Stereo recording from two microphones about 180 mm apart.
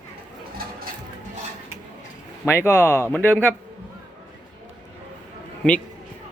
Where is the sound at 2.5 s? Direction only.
15° left (ahead or behind).